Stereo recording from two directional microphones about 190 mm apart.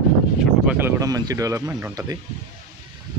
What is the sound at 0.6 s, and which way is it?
Speech, 15° right (ahead or behind).